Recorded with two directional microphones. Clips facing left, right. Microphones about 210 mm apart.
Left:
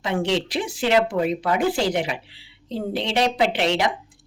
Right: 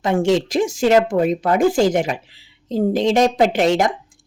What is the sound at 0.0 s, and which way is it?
Speech, 45° right (ahead or behind).